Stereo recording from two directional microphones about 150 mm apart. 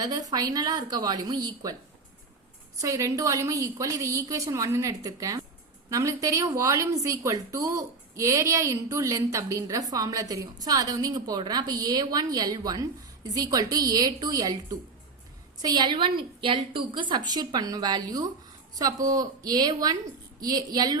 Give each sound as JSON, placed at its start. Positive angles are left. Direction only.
{"t": 0.0, "sound": "a woman's voice", "side_deg": -25}
{"t": 2.8, "sound": "a woman's voice", "side_deg": -20}